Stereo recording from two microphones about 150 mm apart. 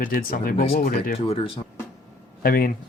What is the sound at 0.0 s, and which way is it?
Speech, 70° left (ahead or behind).